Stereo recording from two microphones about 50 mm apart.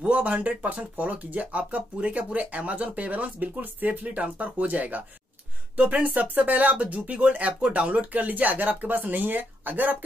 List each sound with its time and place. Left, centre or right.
0.0 s speech: right